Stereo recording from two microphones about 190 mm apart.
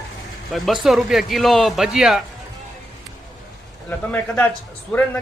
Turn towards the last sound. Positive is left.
turn(degrees=10)  # may be behind; listen again after turning